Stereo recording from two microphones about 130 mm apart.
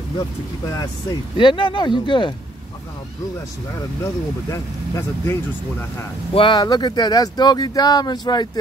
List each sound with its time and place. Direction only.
1.3 s speech: 35° left (ahead or behind)
4.0 s speech: 20° left (ahead or behind)
6.3 s speech: 35° left (ahead or behind)